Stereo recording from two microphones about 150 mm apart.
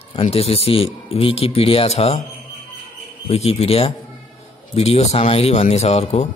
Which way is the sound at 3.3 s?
45° left (ahead or behind).